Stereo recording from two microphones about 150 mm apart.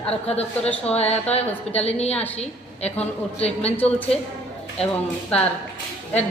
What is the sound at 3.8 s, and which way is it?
Speech, 10° left (ahead or behind).